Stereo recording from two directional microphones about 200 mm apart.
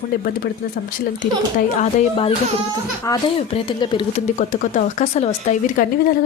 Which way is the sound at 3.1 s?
25° left (ahead or behind).